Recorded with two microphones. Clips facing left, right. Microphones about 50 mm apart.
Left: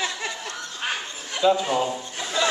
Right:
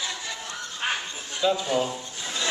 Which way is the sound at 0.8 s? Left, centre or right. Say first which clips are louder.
Right 1 dB; centre.